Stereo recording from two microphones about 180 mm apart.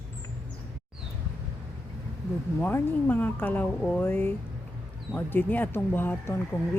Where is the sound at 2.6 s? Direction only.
10° left (ahead or behind).